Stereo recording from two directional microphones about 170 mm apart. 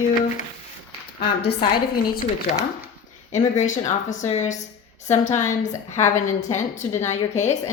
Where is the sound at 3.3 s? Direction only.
45° left (ahead or behind).